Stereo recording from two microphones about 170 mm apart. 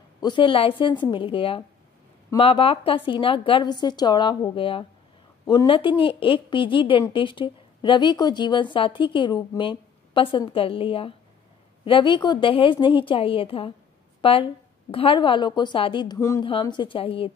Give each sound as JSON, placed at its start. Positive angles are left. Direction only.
{"t": 0.2, "sound": "a woman's voice", "side_deg": 30}
{"t": 16.2, "sound": "a woman's voice", "side_deg": 15}
{"t": 16.4, "sound": "speech", "side_deg": 30}